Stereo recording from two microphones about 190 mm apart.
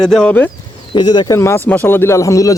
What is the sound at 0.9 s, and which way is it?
Speech, 25° left (ahead or behind).